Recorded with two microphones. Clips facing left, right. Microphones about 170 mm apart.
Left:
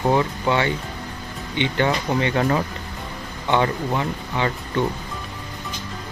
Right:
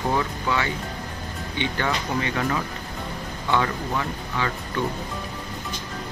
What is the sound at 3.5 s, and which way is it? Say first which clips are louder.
Speech: left 4 dB; 25° left (ahead or behind).